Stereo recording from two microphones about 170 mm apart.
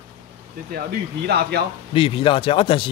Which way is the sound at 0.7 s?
70° right (ahead or behind).